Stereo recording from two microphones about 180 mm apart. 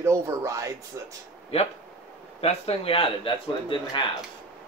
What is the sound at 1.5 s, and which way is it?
Speech, 35° left (ahead or behind).